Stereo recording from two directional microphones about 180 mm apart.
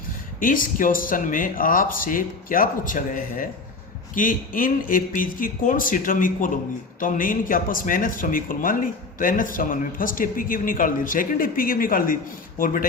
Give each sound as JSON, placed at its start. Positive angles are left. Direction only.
{"t": 0.3, "sound": "speech", "side_deg": 50}